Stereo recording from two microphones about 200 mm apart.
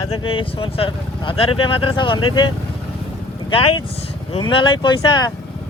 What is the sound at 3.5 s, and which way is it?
Speech, 25° left (ahead or behind).